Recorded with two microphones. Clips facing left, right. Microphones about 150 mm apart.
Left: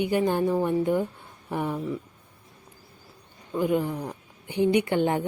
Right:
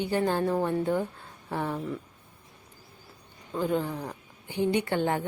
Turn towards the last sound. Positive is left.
turn(degrees=20)  # may be behind; listen again after turning